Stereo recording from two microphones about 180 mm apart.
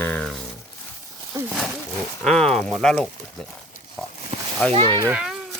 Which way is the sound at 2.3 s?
5° left (ahead or behind).